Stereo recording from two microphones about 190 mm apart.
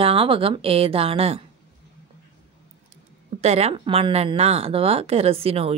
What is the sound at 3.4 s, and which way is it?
Speech, 35° right (ahead or behind).